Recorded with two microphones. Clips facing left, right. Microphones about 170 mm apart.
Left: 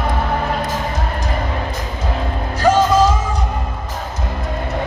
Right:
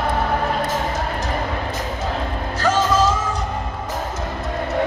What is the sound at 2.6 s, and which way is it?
Music, 15° left (ahead or behind).